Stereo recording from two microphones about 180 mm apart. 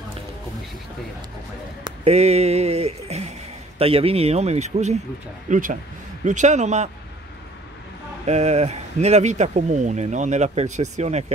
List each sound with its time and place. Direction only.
1.9 s speech: 35° right (ahead or behind)
8.3 s speech: 35° right (ahead or behind)